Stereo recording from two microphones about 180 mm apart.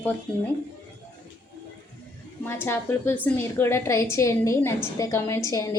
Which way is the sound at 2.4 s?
15° left (ahead or behind).